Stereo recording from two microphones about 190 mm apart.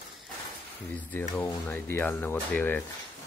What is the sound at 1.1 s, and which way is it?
Speech, 10° left (ahead or behind).